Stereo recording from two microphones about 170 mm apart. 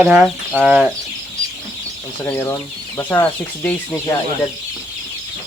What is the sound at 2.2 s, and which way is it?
Speech, 10° left (ahead or behind).